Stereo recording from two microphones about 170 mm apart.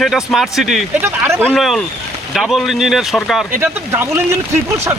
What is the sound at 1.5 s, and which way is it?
Speech, centre (ahead or behind).